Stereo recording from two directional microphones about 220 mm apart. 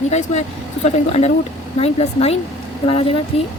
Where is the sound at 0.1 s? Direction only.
30° left (ahead or behind).